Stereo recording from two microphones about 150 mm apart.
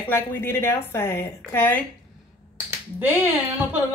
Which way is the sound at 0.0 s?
15° left (ahead or behind).